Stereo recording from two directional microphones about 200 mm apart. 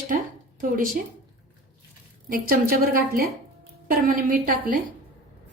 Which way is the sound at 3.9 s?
45° right (ahead or behind).